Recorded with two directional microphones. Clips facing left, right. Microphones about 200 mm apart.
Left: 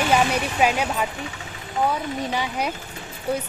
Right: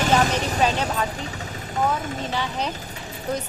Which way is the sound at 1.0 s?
40° right (ahead or behind).